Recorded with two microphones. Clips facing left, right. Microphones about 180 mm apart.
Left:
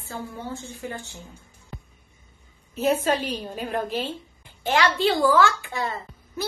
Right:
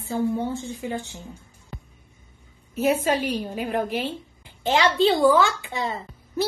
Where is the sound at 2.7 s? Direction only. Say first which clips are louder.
Right 1 dB; 10° right (ahead or behind).